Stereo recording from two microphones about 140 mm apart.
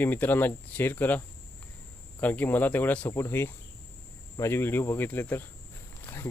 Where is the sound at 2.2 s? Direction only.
10° left (ahead or behind).